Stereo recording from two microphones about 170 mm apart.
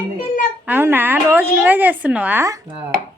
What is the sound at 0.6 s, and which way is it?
Speech, 10° right (ahead or behind).